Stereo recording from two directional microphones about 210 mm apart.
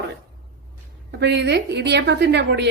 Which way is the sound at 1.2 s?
55° right (ahead or behind).